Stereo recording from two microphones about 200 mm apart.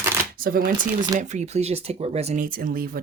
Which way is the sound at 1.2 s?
35° right (ahead or behind).